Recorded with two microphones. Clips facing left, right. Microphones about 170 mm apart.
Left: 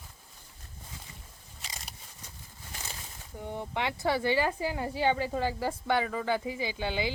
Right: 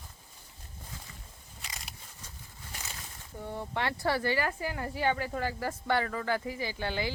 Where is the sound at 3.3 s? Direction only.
15° left (ahead or behind).